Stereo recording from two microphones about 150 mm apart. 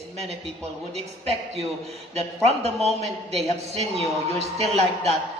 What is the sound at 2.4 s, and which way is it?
A man's voice, 45° right (ahead or behind).